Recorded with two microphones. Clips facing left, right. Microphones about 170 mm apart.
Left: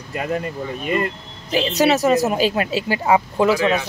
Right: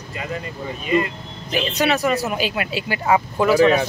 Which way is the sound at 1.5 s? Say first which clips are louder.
Left 3 dB; 35° left (ahead or behind).